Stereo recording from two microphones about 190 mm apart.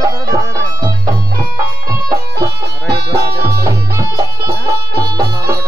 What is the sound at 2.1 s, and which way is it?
Music, 60° right (ahead or behind).